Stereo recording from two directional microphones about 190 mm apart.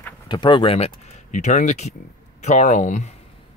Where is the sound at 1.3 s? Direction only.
40° left (ahead or behind).